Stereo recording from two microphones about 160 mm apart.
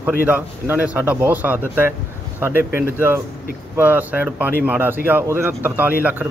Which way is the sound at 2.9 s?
10° right (ahead or behind).